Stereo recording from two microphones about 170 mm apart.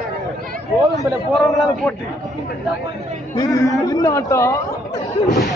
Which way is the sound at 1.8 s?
5° left (ahead or behind).